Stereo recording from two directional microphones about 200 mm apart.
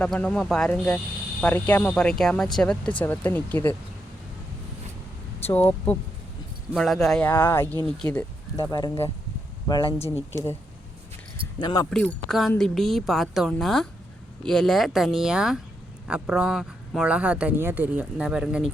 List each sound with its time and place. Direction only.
0.0 s speech: 5° left (ahead or behind)
5.5 s speech: 10° left (ahead or behind)
8.1 s speech: 15° left (ahead or behind)
10.2 s speech: 15° right (ahead or behind)
11.6 s speech: 20° left (ahead or behind)
11.9 s speech: 5° left (ahead or behind)